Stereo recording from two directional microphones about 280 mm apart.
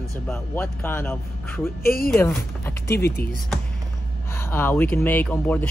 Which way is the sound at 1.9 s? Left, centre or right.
Left.